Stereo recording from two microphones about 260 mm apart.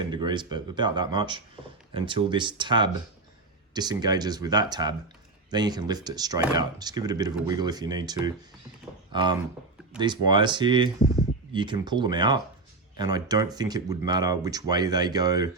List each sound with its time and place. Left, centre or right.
0.0 s speech: centre